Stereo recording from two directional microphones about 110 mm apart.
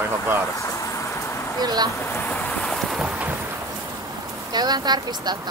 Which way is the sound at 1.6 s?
35° right (ahead or behind).